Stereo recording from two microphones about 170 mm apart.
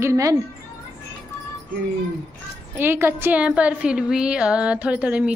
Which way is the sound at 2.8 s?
15° right (ahead or behind).